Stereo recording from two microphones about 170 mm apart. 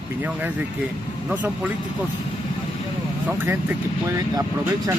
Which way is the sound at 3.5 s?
15° right (ahead or behind).